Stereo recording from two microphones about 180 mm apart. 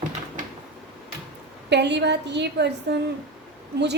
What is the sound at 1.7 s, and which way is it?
A woman's voice, 70° right (ahead or behind).